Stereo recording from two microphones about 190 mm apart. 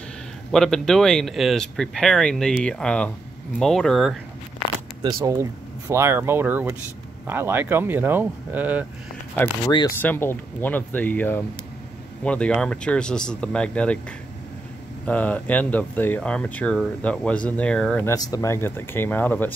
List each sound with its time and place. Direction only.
0.5 s speech: 5° left (ahead or behind)
5.2 s speech: 15° right (ahead or behind)
10.0 s speech: 10° left (ahead or behind)
15.0 s speech: 5° left (ahead or behind)
18.1 s speech: 20° left (ahead or behind)